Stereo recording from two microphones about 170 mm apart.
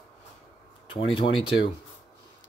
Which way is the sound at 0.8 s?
35° left (ahead or behind).